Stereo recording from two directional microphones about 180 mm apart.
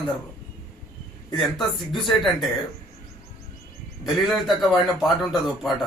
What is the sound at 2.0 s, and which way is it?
Speech, centre (ahead or behind).